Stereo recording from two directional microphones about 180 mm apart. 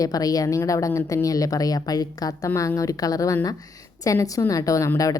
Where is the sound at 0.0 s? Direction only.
20° left (ahead or behind).